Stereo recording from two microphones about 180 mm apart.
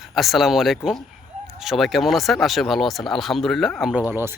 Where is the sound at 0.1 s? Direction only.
Centre (ahead or behind).